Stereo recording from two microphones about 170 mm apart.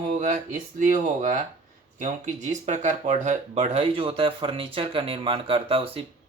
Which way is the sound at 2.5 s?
45° right (ahead or behind).